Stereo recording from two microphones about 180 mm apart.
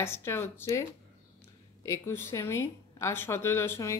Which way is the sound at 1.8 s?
15° left (ahead or behind).